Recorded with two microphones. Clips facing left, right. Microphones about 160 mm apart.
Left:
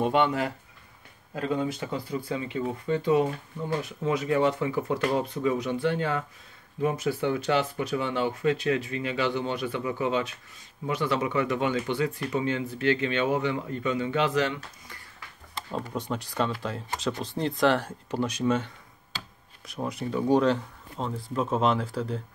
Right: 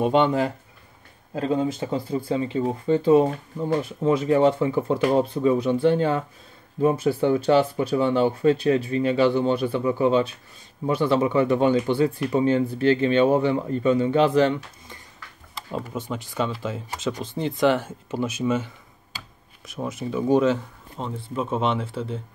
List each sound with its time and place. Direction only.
0.0 s speech: 25° right (ahead or behind)
15.7 s speech: 5° right (ahead or behind)
19.7 s speech: centre (ahead or behind)